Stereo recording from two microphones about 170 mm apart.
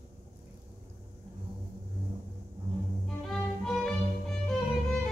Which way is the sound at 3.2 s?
5° left (ahead or behind).